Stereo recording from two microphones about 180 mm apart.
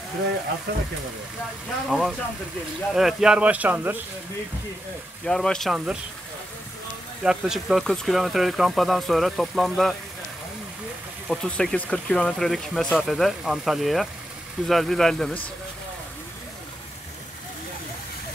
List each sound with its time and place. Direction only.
0.7 s speech: 65° right (ahead or behind)
1.9 s speech: centre (ahead or behind)
5.2 s speech: 5° left (ahead or behind)
7.2 s speech: 5° right (ahead or behind)
11.2 s speech: 5° left (ahead or behind)